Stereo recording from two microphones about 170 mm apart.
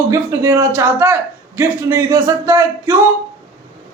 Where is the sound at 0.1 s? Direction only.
15° right (ahead or behind).